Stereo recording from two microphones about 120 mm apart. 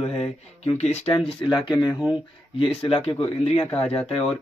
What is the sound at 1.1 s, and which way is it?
Speech, 40° left (ahead or behind).